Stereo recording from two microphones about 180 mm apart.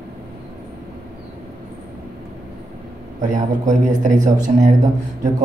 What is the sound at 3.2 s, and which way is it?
Speech, 45° right (ahead or behind).